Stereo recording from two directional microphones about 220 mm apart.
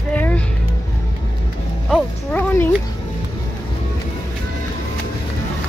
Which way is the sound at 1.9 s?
10° left (ahead or behind).